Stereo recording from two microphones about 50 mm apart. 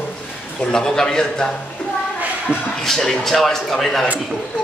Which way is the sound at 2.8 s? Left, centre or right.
Centre.